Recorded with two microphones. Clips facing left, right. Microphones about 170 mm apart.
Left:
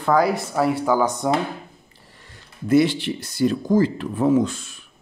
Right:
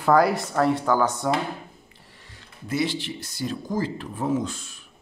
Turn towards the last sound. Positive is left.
turn(degrees=70)  # may be behind; listen again after turning